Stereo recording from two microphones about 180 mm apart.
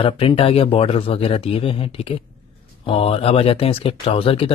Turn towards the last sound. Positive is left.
turn(degrees=30)  # may be behind; listen again after turning